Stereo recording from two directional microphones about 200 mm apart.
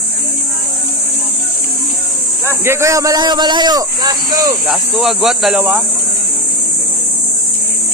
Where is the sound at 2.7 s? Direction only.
15° right (ahead or behind).